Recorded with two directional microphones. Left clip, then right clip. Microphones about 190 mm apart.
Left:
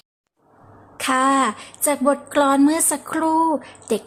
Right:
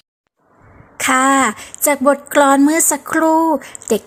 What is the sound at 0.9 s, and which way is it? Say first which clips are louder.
A woman's voice: right 5 dB; 20° right (ahead or behind).